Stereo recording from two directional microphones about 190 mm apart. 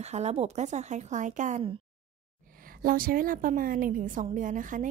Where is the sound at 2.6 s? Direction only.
50° right (ahead or behind).